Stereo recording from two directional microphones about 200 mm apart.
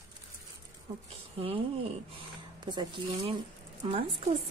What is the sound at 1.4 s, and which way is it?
Speech, 30° right (ahead or behind).